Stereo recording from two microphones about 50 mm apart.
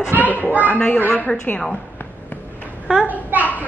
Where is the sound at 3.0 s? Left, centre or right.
Right.